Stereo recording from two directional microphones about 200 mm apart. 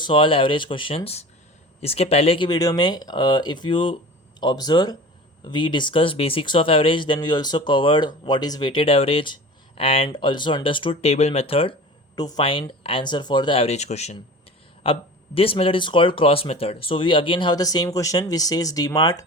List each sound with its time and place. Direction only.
0.0 s speech: 25° left (ahead or behind)